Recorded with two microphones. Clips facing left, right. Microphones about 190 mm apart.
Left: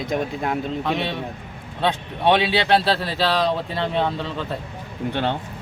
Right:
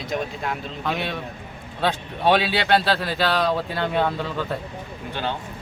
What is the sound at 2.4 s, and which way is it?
Speech, 25° left (ahead or behind).